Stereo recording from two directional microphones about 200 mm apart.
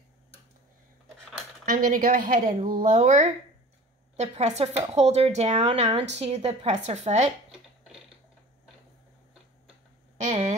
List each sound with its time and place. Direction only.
1.7 s speech: 45° right (ahead or behind)
10.2 s speech: 35° right (ahead or behind)